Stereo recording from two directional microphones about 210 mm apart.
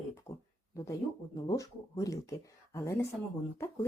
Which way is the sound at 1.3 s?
15° left (ahead or behind).